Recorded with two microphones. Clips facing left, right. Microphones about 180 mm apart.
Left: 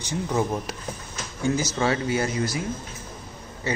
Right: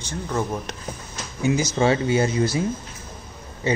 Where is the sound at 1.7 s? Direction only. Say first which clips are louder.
Right 4 dB; 25° right (ahead or behind).